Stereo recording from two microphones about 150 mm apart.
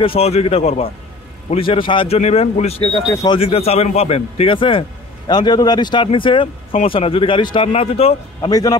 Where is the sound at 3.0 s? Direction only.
20° left (ahead or behind).